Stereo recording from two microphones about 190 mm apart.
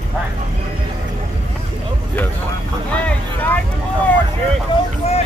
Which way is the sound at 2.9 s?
10° left (ahead or behind).